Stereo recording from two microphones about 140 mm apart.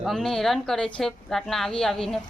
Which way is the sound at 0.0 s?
Centre (ahead or behind).